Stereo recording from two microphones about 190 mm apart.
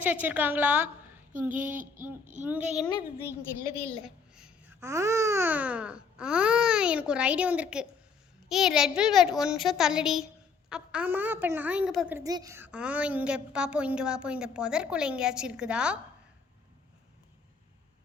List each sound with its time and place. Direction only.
0.0 s baby cry: 10° right (ahead or behind)
1.5 s a sound: 45° right (ahead or behind)
2.4 s baby cry: 10° right (ahead or behind)
2.7 s speech: 20° left (ahead or behind)
4.0 s a sound: 5° right (ahead or behind)
4.8 s baby cry: 15° right (ahead or behind)
8.4 s a woman's voice: centre (ahead or behind)